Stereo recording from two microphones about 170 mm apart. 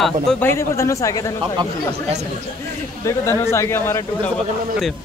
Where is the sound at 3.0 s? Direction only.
15° left (ahead or behind).